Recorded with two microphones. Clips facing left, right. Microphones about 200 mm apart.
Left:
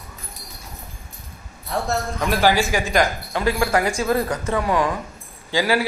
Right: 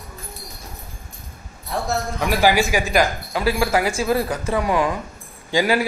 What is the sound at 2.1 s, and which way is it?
Speech, 10° right (ahead or behind).